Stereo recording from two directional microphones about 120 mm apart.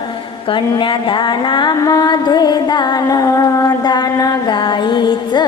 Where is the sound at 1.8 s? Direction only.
30° left (ahead or behind).